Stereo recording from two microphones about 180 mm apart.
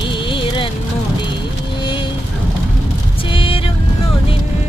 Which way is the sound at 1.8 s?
25° left (ahead or behind).